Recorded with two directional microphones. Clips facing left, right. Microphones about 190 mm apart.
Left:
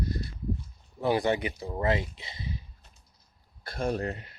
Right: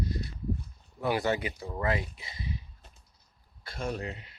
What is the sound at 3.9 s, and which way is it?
Speech, 50° left (ahead or behind).